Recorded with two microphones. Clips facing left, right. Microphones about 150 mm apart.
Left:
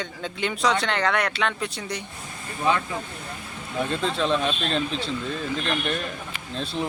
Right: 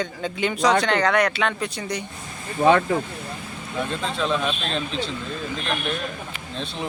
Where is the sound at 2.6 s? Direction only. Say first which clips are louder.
Right 7 dB; 50° right (ahead or behind).